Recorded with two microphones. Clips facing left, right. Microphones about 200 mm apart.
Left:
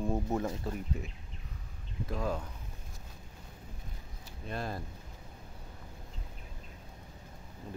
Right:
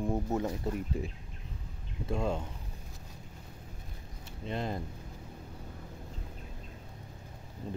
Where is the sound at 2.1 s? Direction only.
25° right (ahead or behind).